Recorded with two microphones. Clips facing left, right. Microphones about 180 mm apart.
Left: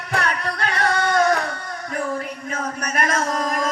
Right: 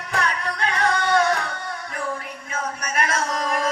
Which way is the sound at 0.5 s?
35° left (ahead or behind).